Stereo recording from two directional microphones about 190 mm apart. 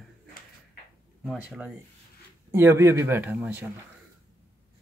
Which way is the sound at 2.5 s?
15° right (ahead or behind).